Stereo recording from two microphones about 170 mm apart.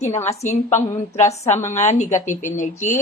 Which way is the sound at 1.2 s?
40° left (ahead or behind).